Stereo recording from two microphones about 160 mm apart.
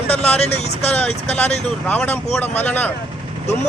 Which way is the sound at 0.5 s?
40° left (ahead or behind).